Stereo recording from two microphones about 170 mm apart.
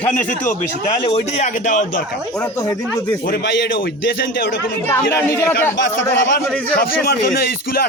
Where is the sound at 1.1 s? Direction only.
40° left (ahead or behind).